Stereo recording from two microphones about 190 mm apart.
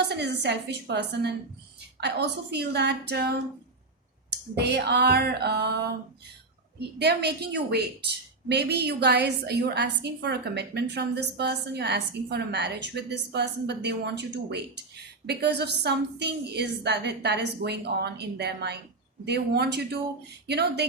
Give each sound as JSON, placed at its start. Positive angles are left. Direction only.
{"t": 0.1, "sound": "a woman's voice", "side_deg": -65}
{"t": 4.5, "sound": "a woman's voice", "side_deg": -60}